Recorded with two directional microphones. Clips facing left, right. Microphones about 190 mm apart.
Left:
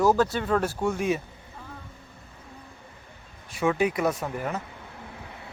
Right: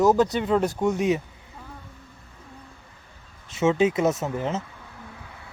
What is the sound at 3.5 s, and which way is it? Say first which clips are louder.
Speech: right 4 dB; 25° right (ahead or behind).